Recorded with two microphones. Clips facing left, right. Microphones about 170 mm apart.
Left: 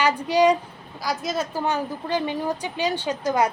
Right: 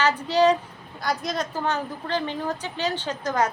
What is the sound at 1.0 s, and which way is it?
A woman's voice, centre (ahead or behind).